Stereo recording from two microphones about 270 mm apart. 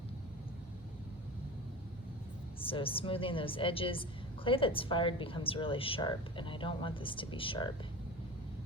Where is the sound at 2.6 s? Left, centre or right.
Centre.